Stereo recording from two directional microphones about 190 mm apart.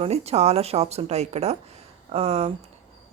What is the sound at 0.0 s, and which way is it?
A woman's voice, 35° right (ahead or behind).